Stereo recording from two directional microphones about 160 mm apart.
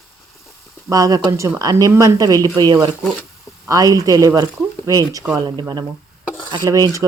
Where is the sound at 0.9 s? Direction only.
20° right (ahead or behind).